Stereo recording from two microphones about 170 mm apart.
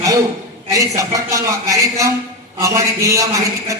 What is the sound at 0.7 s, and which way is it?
A man's voice, 20° right (ahead or behind).